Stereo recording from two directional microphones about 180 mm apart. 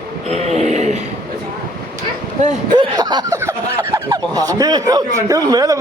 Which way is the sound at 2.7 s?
25° right (ahead or behind).